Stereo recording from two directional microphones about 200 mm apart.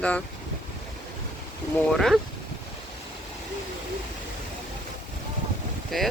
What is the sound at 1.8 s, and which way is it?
Speech, centre (ahead or behind).